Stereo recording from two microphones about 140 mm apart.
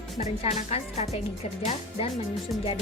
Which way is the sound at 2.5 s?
Centre (ahead or behind).